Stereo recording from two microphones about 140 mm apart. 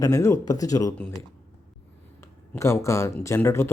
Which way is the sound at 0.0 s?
20° left (ahead or behind).